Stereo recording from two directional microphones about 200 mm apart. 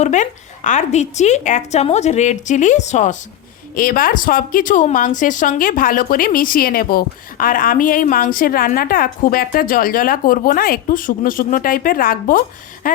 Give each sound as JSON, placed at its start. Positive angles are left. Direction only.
{"t": 0.0, "sound": "a woman's voice", "side_deg": 35}